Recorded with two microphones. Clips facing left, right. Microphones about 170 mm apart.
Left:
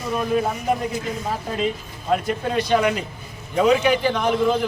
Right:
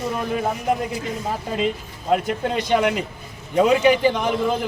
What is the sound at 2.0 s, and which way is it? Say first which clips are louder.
A man's voice: right 1 dB; 20° right (ahead or behind).